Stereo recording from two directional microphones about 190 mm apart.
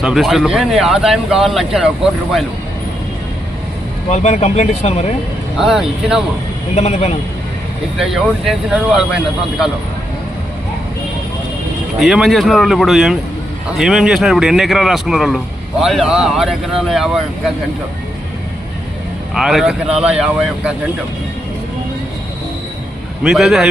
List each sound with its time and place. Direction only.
0.0 s speech: centre (ahead or behind)
4.1 s speech: 35° left (ahead or behind)
5.5 s speech: centre (ahead or behind)
6.7 s speech: 35° left (ahead or behind)
7.9 s speech: centre (ahead or behind)
11.9 s speech: centre (ahead or behind)
19.3 s speech: centre (ahead or behind)
23.2 s speech: centre (ahead or behind)